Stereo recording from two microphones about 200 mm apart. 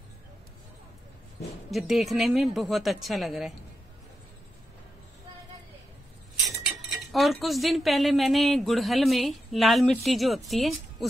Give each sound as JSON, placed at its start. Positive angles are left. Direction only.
{"t": 1.7, "sound": "speech", "side_deg": 0}
{"t": 6.3, "sound": "cutlery", "side_deg": 0}
{"t": 7.1, "sound": "speech", "side_deg": 0}